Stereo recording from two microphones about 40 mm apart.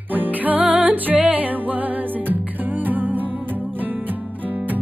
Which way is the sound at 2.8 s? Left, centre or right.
Right.